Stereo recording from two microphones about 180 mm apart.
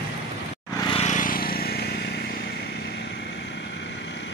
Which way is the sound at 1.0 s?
45° left (ahead or behind).